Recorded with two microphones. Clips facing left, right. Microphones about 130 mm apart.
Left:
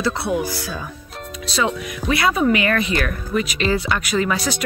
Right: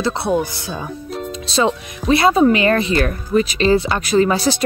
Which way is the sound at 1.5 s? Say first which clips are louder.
Right 4 dB; 30° right (ahead or behind).